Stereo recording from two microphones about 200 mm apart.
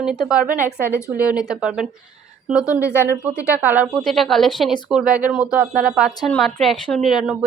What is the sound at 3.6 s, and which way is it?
A woman's voice, 10° right (ahead or behind).